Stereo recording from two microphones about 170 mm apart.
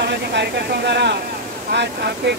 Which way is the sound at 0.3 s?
80° right.